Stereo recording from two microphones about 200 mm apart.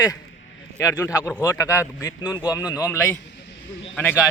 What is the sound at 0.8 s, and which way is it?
Speech, 15° left (ahead or behind).